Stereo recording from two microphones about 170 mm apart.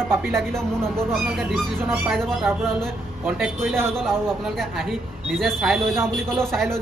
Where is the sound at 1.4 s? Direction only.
10° right (ahead or behind).